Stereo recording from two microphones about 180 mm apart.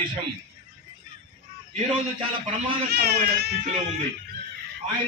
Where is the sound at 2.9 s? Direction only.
65° right (ahead or behind).